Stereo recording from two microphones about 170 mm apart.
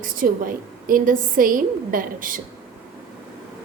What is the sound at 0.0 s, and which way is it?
A woman's voice, 55° right (ahead or behind).